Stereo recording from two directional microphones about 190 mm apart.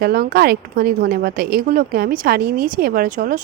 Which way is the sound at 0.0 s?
55° right (ahead or behind).